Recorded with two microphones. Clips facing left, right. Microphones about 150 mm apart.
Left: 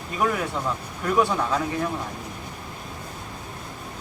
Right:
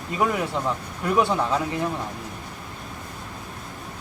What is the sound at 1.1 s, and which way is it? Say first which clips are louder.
Speech: right 1 dB; 15° right (ahead or behind).